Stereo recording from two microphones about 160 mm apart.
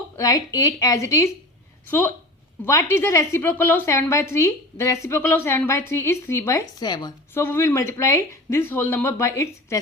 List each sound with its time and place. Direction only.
0.2 s a woman's voice: 20° left (ahead or behind)
7.4 s speech: 15° left (ahead or behind)